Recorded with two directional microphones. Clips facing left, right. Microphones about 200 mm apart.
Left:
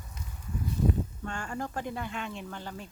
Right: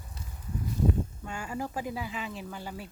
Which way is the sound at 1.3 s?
5° right (ahead or behind).